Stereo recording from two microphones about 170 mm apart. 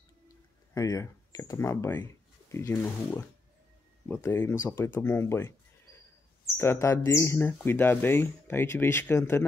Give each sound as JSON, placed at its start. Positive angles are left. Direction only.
{"t": 0.7, "sound": "speech", "side_deg": 20}
{"t": 6.6, "sound": "speech", "side_deg": 15}